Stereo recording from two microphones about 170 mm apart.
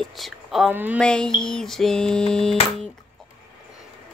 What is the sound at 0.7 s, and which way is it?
Speech, 10° right (ahead or behind).